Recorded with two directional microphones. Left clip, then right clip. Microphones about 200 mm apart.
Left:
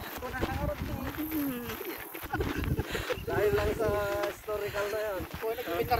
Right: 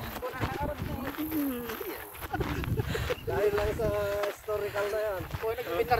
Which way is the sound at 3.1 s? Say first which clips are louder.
Even; 25° left (ahead or behind).